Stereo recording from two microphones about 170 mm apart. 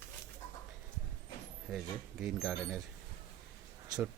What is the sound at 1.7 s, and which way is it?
Speech, 5° right (ahead or behind).